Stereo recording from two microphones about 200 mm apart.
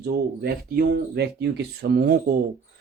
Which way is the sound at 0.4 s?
55° right (ahead or behind).